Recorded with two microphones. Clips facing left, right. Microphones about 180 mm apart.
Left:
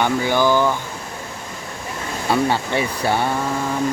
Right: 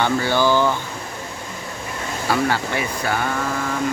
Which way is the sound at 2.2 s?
25° left (ahead or behind).